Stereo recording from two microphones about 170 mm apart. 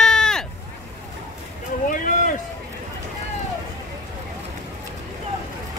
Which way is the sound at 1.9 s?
50° left (ahead or behind).